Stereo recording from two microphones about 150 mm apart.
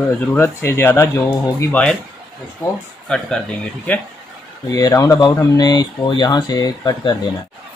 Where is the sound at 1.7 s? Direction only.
10° left (ahead or behind).